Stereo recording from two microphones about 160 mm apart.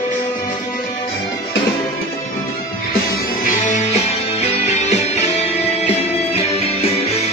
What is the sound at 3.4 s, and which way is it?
Music, 55° left (ahead or behind).